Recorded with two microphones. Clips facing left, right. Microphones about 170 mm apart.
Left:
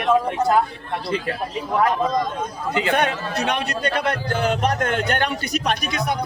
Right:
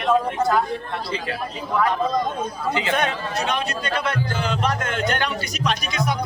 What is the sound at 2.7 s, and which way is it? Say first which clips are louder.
A man's voice: left 3 dB; 55° left (ahead or behind).